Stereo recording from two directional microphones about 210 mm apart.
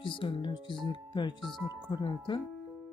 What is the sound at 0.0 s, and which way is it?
Speech, 25° left (ahead or behind).